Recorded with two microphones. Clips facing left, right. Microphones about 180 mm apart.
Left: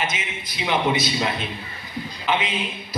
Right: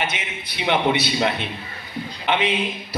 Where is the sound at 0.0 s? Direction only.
60° right (ahead or behind).